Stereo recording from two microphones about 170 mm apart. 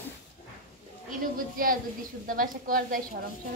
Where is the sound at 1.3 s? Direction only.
55° right (ahead or behind).